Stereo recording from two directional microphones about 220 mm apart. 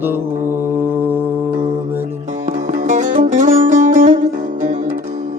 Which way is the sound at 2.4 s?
35° right (ahead or behind).